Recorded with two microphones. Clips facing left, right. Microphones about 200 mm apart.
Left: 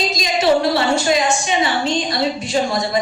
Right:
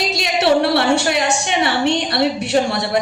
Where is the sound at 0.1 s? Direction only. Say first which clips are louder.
Right 1 dB; 65° right (ahead or behind).